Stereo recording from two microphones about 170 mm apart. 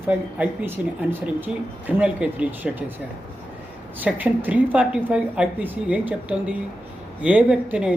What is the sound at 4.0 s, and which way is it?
Speech, 10° right (ahead or behind).